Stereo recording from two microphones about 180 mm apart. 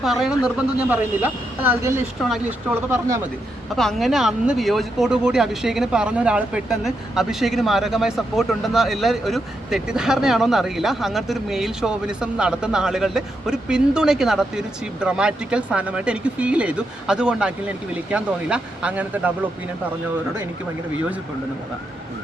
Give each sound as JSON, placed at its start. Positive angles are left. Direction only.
{"t": 0.0, "sound": "speech", "side_deg": 0}
{"t": 2.2, "sound": "speech", "side_deg": 0}
{"t": 3.8, "sound": "speech", "side_deg": 0}